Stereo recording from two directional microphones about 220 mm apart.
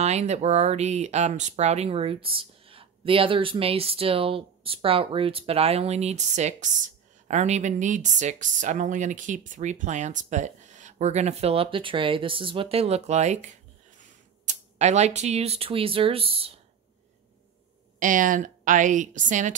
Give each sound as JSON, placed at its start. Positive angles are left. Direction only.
{"t": 0.0, "sound": "speech", "side_deg": -30}
{"t": 17.9, "sound": "speech", "side_deg": -35}